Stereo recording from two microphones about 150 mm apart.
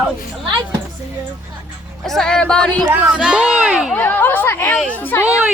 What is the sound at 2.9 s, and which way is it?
Speech, 10° right (ahead or behind).